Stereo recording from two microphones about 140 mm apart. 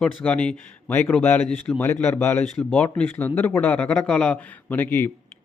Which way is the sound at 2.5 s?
5° left (ahead or behind).